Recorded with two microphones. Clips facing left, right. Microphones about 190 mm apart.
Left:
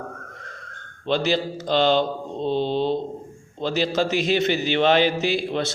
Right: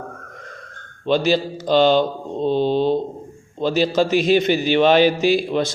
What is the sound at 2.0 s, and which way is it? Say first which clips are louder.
Mantra: right 4 dB; 55° right (ahead or behind).